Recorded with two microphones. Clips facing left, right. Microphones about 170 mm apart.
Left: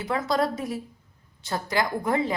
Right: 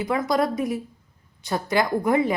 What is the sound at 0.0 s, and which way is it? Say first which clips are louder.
A woman's voice: right 3 dB; 20° right (ahead or behind).